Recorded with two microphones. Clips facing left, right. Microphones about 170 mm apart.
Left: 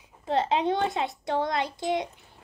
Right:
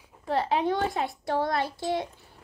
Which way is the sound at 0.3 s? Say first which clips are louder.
Left 1 dB; 20° left (ahead or behind).